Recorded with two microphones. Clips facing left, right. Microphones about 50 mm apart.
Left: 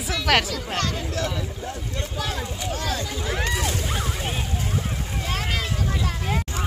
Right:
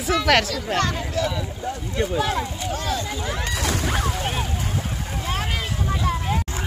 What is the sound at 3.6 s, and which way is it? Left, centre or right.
Speech, right.